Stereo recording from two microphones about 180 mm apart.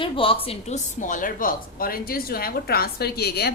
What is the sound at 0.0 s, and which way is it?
A woman's voice, 30° left (ahead or behind).